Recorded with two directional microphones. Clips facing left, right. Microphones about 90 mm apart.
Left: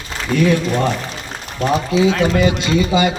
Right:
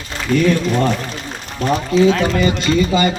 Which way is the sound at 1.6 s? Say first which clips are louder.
Right 1 dB; 10° left (ahead or behind).